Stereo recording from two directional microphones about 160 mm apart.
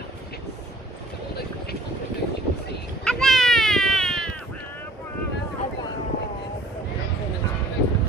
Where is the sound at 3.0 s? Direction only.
5° left (ahead or behind).